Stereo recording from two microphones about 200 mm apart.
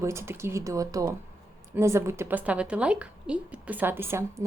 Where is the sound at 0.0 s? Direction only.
15° right (ahead or behind).